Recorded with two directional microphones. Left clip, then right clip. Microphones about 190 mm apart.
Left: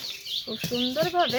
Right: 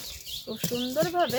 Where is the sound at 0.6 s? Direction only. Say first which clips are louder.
Left 1 dB; 35° right (ahead or behind).